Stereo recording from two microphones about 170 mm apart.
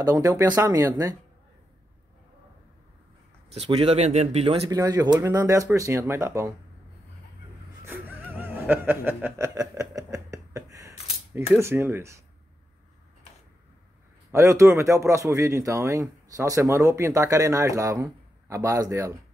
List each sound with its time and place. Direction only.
0.0 s speech: 15° right (ahead or behind)
3.5 s speech: 35° right (ahead or behind)
4.6 s speech: 20° right (ahead or behind)
7.8 s music: 10° right (ahead or behind)
11.5 s speech: 15° right (ahead or behind)
14.3 s speech: 15° right (ahead or behind)